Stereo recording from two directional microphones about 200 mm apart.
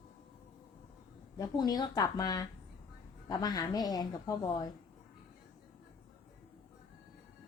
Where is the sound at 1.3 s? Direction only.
20° left (ahead or behind).